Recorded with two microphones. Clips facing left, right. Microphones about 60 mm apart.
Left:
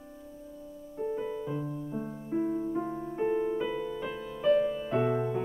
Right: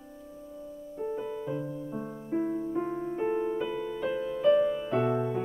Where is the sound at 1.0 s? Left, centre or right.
Centre.